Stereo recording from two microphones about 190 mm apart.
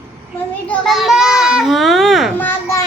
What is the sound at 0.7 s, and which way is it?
Children playing, centre (ahead or behind).